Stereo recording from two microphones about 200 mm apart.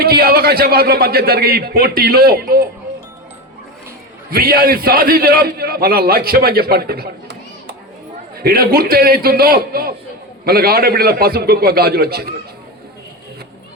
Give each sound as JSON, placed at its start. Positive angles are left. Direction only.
{"t": 0.0, "sound": "a man's voice", "side_deg": -50}
{"t": 4.3, "sound": "a man's voice", "side_deg": -50}